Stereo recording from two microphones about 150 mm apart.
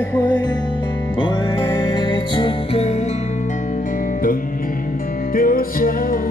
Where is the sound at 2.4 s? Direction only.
40° left (ahead or behind).